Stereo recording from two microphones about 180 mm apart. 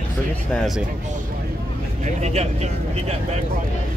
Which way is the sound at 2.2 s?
40° right (ahead or behind).